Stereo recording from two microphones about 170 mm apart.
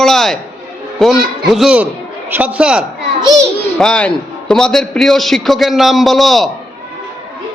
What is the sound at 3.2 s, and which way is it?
Speech, 25° right (ahead or behind).